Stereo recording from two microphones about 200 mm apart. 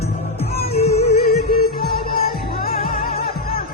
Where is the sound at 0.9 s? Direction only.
50° left (ahead or behind).